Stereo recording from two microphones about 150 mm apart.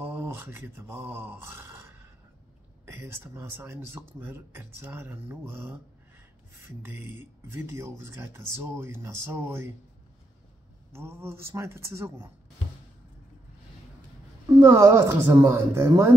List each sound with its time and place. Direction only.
0.0 s a sound: 15° right (ahead or behind)
2.8 s speech: 15° right (ahead or behind)
6.8 s speech: 15° right (ahead or behind)
10.9 s speech: 15° right (ahead or behind)
14.5 s speech: 20° right (ahead or behind)